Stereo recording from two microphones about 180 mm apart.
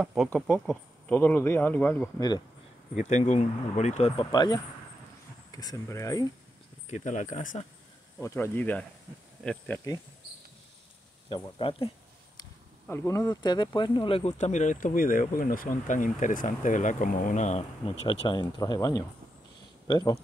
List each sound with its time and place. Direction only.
0.0 s speech: 5° right (ahead or behind)
0.7 s speech: 10° left (ahead or behind)
2.1 s speech: 20° left (ahead or behind)
3.0 s speech: 40° left (ahead or behind)
4.3 s speech: 25° left (ahead or behind)
6.9 s speech: 45° left (ahead or behind)
8.2 s speech: 15° left (ahead or behind)
11.5 s speech: 30° left (ahead or behind)
12.8 s speech: 15° left (ahead or behind)